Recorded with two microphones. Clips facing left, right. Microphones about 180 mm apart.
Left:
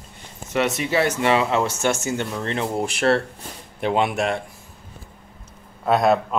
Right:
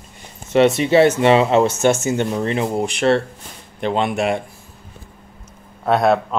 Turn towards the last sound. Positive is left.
turn(degrees=0)  # may be behind; listen again after turning